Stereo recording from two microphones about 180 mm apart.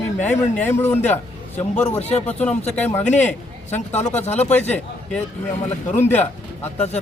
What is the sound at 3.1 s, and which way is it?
A man's voice, 40° left (ahead or behind).